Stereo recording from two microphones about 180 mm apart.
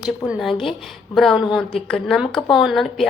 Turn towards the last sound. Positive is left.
turn(degrees=0)  # may be behind; listen again after turning